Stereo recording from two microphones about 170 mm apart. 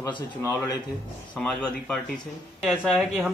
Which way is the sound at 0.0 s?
20° left (ahead or behind).